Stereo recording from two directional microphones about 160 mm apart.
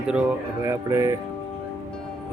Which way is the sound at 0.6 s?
20° right (ahead or behind).